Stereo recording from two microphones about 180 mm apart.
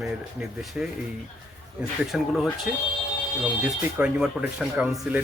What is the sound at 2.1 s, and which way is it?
Speech, centre (ahead or behind).